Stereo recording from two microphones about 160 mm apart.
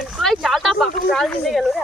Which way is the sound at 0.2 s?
Centre (ahead or behind).